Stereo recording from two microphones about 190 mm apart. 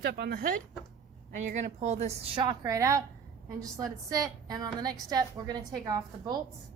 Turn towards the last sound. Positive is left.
turn(degrees=-20)  # may be behind; listen again after turning